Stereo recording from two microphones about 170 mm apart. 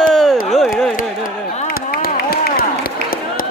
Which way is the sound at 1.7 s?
60° left (ahead or behind).